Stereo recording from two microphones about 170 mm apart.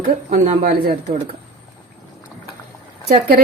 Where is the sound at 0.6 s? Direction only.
60° right (ahead or behind).